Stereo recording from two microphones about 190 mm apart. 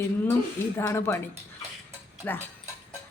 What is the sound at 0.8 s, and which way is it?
Speech, 15° left (ahead or behind).